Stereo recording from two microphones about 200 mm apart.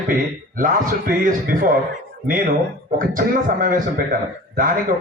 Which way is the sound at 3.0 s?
45° right (ahead or behind).